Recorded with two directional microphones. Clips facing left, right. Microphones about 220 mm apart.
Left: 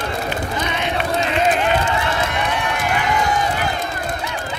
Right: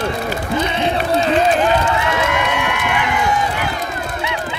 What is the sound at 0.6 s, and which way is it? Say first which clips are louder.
Run: right 4 dB; 30° right (ahead or behind).